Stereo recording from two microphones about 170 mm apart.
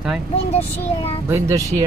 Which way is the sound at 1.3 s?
15° right (ahead or behind).